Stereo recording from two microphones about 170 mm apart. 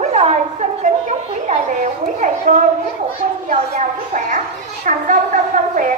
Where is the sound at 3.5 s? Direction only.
50° right (ahead or behind).